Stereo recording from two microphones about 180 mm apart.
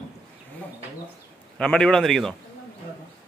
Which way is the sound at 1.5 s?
5° left (ahead or behind).